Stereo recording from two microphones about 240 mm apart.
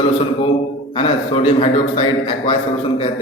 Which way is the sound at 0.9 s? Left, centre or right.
Left.